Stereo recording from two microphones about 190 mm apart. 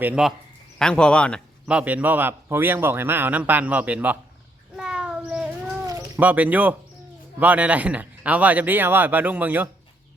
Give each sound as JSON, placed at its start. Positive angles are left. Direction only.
{"t": 0.0, "sound": "speech", "side_deg": -5}
{"t": 1.6, "sound": "a man's voice", "side_deg": -5}
{"t": 4.8, "sound": "a sound", "side_deg": -5}
{"t": 5.8, "sound": "cat", "side_deg": -20}
{"t": 6.1, "sound": "a man's voice", "side_deg": -10}